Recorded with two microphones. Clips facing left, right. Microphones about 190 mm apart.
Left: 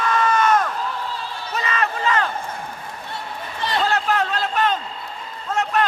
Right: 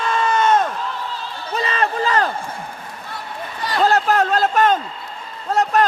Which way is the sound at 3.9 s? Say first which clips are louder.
Right 8 dB; 40° right (ahead or behind).